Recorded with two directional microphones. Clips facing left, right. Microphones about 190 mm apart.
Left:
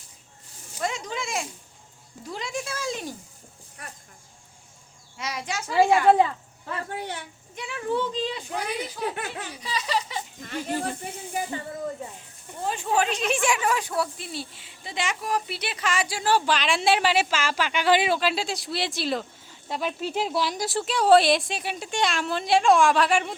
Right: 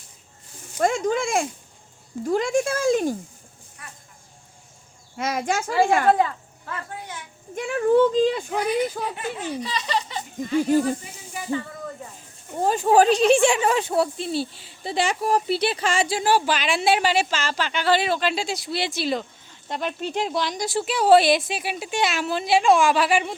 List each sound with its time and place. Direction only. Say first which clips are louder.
0.8 s speech: right 9 dB; 50° right (ahead or behind)
5.1 s speech: right 8 dB; 50° right (ahead or behind)
6.1 s speech: left 1 dB; 25° left (ahead or behind)
7.5 s speech: right 9 dB; 50° right (ahead or behind)
9.6 s speech: right 2 dB; 10° left (ahead or behind)
10.6 s speech: right 9 dB; 45° right (ahead or behind)
12.5 s speech: right 8 dB; 40° right (ahead or behind)
16.2 s speech: left 1 dB; 5° right (ahead or behind)